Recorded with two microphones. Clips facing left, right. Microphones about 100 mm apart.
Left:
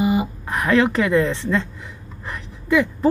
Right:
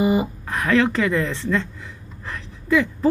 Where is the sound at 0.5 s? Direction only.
15° left (ahead or behind).